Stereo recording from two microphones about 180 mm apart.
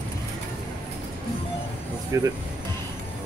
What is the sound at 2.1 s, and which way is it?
Speech, 15° right (ahead or behind).